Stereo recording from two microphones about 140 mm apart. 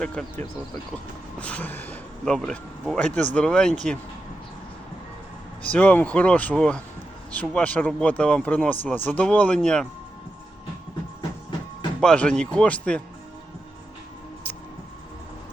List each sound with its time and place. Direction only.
0.0 s speech: 10° left (ahead or behind)
5.7 s speech: 10° left (ahead or behind)
11.9 s speech: 5° left (ahead or behind)